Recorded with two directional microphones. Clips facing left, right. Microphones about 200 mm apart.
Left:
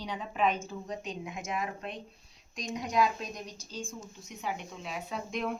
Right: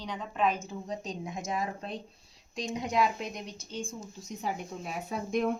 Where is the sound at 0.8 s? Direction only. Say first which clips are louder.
Right 1 dB; 35° right (ahead or behind).